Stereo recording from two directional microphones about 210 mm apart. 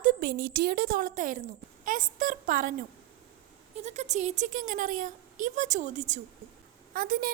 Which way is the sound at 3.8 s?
35° right (ahead or behind).